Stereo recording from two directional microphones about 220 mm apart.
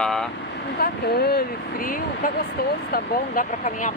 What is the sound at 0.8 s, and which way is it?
Speech, 45° left (ahead or behind).